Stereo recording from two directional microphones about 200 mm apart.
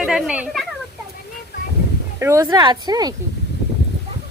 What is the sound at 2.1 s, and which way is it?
Speech, 15° right (ahead or behind).